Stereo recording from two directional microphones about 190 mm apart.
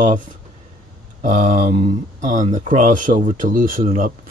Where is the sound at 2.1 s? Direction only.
40° right (ahead or behind).